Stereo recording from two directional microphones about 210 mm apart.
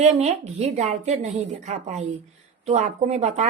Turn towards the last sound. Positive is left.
turn(degrees=-30)  # may be behind; listen again after turning